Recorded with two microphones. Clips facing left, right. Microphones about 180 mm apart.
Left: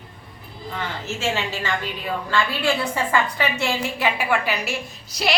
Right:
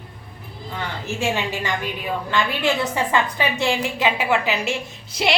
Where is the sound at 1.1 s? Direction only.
15° right (ahead or behind).